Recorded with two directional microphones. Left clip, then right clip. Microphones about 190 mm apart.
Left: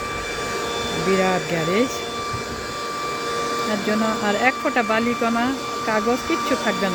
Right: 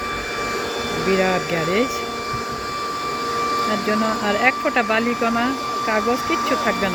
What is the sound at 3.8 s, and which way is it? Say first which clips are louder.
Speech: right 1 dB; 15° left (ahead or behind).